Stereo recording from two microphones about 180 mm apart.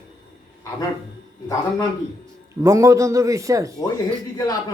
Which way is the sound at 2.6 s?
15° right (ahead or behind).